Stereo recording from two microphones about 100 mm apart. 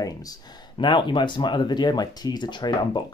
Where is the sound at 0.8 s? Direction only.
50° left (ahead or behind).